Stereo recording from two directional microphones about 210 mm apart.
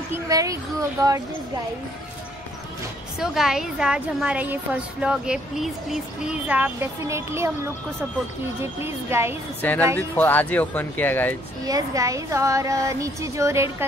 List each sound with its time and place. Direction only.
0.1 s speech: 15° right (ahead or behind)
3.2 s a woman's voice: centre (ahead or behind)
8.8 s speech: 10° right (ahead or behind)
9.6 s speech: 10° left (ahead or behind)
11.6 s speech: 15° right (ahead or behind)